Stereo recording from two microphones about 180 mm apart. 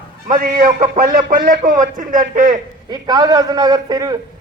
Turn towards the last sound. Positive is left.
turn(degrees=-20)  # may be behind; listen again after turning